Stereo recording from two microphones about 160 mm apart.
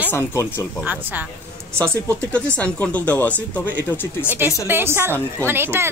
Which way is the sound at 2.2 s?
5° left (ahead or behind).